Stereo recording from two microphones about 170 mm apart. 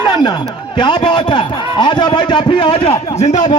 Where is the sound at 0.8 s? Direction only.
25° left (ahead or behind).